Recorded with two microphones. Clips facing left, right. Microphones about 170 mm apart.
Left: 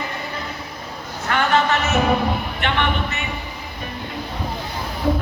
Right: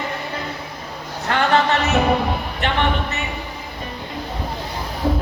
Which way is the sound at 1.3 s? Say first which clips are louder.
Right 1 dB; 30° right (ahead or behind).